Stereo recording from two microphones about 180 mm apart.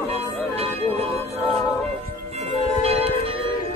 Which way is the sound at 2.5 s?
35° right (ahead or behind).